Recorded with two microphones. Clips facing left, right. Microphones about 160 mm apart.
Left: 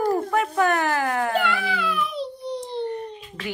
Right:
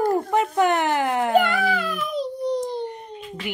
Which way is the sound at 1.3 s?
45° right (ahead or behind).